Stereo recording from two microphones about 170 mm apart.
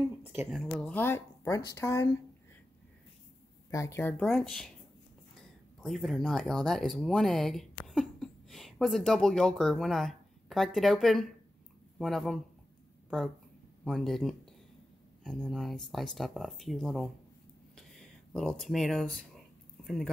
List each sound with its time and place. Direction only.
0.2 s speech: 10° right (ahead or behind)
0.5 s speech: centre (ahead or behind); by 2.0 s 15° left (ahead or behind)
3.7 s speech: 15° left (ahead or behind)
4.3 s speech: centre (ahead or behind)
13.8 s speech: centre (ahead or behind)
17.7 s a sound: 5° left (ahead or behind)